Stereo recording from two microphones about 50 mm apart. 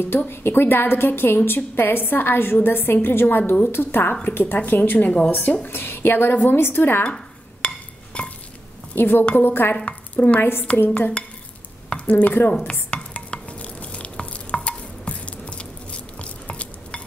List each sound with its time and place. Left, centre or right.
0.3 s a woman's voice: left
4.6 s speech: left
5.7 s a woman's voice: left
7.2 s a sound: left
8.9 s a woman's voice: left
9.8 s speech: left
11.0 s dishes: left
12.1 s speech: left
12.9 s stir: left